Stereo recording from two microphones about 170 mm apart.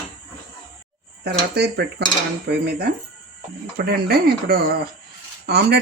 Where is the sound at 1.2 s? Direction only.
70° right (ahead or behind).